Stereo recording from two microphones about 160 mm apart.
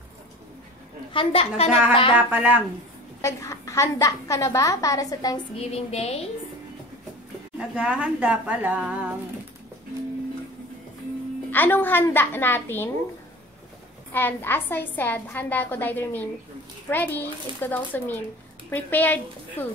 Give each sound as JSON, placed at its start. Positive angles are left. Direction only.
{"t": 1.1, "sound": "a woman's voice", "side_deg": 35}
{"t": 2.1, "sound": "a woman's voice", "side_deg": -10}
{"t": 3.2, "sound": "a woman's voice", "side_deg": 20}
{"t": 5.6, "sound": "a woman's voice", "side_deg": 40}
{"t": 7.5, "sound": "a woman's voice", "side_deg": -5}
{"t": 11.5, "sound": "a woman's voice", "side_deg": 10}
{"t": 14.1, "sound": "a woman's voice", "side_deg": 15}